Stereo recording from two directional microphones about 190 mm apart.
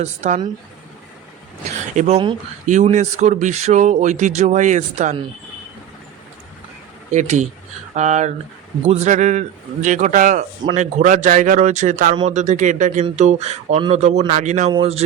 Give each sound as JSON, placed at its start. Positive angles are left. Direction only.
{"t": 0.0, "sound": "speech", "side_deg": -40}
{"t": 2.0, "sound": "speech", "side_deg": -35}
{"t": 7.1, "sound": "speech", "side_deg": -40}